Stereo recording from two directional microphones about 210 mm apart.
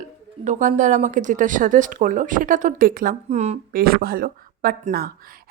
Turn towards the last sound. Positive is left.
turn(degrees=-45)  # may be behind; listen again after turning